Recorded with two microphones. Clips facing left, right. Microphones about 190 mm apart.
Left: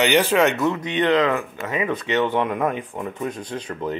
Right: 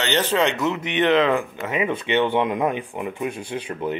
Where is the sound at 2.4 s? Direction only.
15° right (ahead or behind).